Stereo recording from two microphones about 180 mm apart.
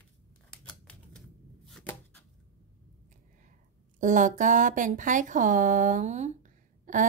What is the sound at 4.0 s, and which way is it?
A woman's voice, 45° right (ahead or behind).